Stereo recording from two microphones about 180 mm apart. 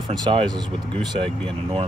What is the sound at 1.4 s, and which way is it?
Speech, 35° right (ahead or behind).